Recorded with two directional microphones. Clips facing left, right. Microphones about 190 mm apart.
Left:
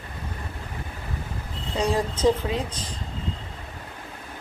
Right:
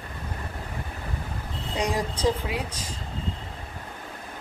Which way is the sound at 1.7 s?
15° right (ahead or behind).